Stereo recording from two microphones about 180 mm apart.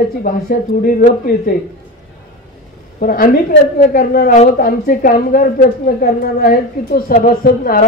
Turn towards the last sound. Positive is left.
turn(degrees=55)  # may be behind; listen again after turning